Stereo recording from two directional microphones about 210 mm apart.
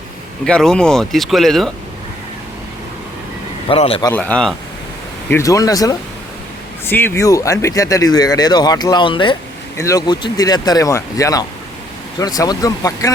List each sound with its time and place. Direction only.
0.4 s speech: 5° left (ahead or behind)
3.7 s a man's voice: 25° left (ahead or behind)
4.1 s speech: 5° left (ahead or behind)
5.3 s speech: 15° left (ahead or behind)